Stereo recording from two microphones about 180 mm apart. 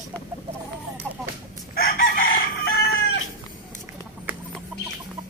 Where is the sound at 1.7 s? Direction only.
55° left (ahead or behind).